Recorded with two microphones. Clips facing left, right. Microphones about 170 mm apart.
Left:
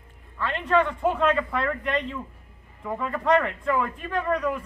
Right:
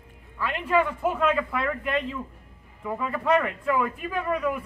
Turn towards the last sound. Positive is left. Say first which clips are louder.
# left 1 dB
turn(degrees=-5)  # may be behind; listen again after turning